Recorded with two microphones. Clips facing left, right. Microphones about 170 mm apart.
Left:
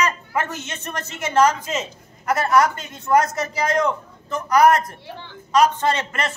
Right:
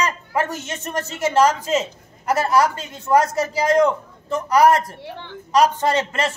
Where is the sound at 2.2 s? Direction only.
30° right (ahead or behind).